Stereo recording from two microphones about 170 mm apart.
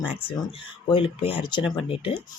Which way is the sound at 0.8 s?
30° left (ahead or behind).